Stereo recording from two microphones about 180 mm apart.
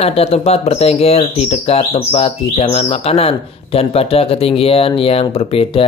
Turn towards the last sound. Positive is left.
turn(degrees=30)  # may be behind; listen again after turning